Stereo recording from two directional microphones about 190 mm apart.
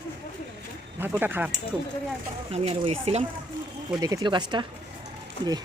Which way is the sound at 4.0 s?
20° right (ahead or behind).